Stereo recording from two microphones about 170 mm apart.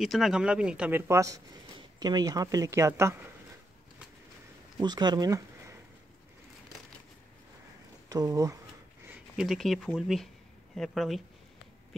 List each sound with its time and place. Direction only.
0.0 s speech: centre (ahead or behind)
4.7 s speech: 25° right (ahead or behind)
8.1 s speech: 20° right (ahead or behind)
9.0 s speech: 5° right (ahead or behind)